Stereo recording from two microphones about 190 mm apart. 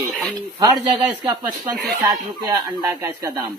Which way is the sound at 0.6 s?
20° right (ahead or behind).